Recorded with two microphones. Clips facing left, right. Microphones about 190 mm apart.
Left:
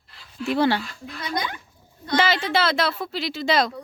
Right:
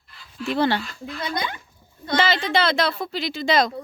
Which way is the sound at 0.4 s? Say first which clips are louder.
Left 1 dB; 10° left (ahead or behind).